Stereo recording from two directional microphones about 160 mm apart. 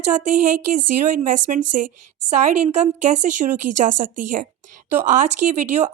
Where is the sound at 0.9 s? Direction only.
55° right (ahead or behind).